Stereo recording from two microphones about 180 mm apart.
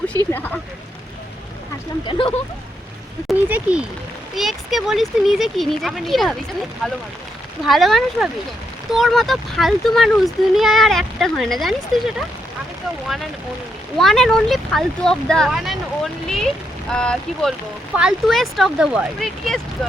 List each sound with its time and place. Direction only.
0.3 s speech: 10° left (ahead or behind)
2.0 s speech: 30° left (ahead or behind)
3.2 s speech: 5° right (ahead or behind)
7.6 s speech: centre (ahead or behind)
14.0 s speech: centre (ahead or behind)
16.9 s speech: 5° left (ahead or behind)